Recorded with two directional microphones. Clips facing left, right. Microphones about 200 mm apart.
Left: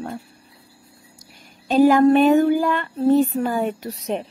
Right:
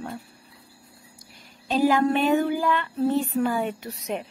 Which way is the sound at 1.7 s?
50° left (ahead or behind).